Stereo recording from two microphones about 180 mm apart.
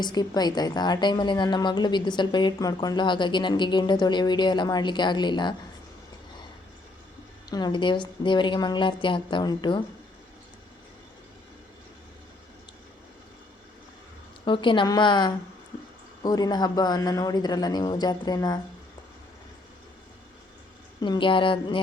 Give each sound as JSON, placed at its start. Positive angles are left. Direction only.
{"t": 0.0, "sound": "a woman's voice", "side_deg": 20}
{"t": 7.5, "sound": "a woman's voice", "side_deg": 25}
{"t": 14.4, "sound": "a woman's voice", "side_deg": 25}
{"t": 21.0, "sound": "a woman's voice", "side_deg": 25}